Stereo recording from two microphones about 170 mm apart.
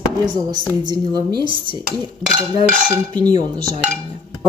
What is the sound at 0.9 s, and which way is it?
Speech, 25° right (ahead or behind).